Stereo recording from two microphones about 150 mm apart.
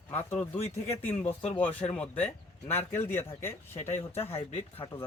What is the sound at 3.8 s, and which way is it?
Speech, 50° left (ahead or behind).